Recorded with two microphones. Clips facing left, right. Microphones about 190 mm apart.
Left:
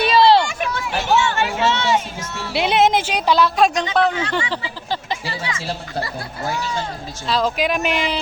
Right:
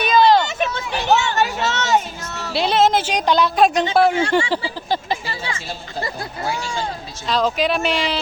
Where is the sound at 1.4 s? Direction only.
40° right (ahead or behind).